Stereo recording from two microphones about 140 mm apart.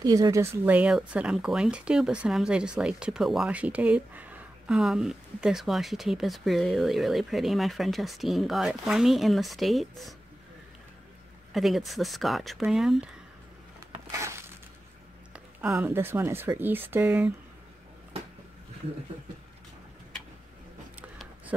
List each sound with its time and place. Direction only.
0.0 s speech: 25° right (ahead or behind); by 10.1 s centre (ahead or behind)
11.5 s speech: centre (ahead or behind)
14.1 s a sound: 20° right (ahead or behind)
15.3 s speech: 15° right (ahead or behind)